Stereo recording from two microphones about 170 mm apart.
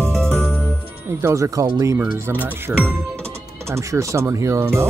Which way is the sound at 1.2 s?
15° right (ahead or behind).